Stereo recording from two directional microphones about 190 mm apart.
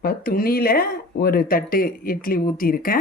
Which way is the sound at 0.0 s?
50° left (ahead or behind).